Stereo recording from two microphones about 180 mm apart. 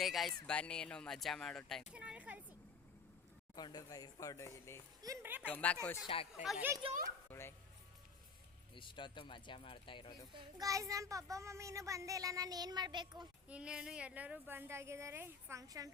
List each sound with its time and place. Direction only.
0.0 s a child's voice: centre (ahead or behind)
3.5 s speech: 20° left (ahead or behind)
5.0 s a child's voice: 15° right (ahead or behind)
5.5 s speech: 10° left (ahead or behind)
6.1 s speech: 30° left (ahead or behind)
6.4 s speech: centre (ahead or behind)
7.3 s speech: 15° left (ahead or behind)
8.7 s speech: 25° left (ahead or behind)
10.3 s a child's voice: 20° right (ahead or behind)
13.5 s a child's voice: 5° right (ahead or behind)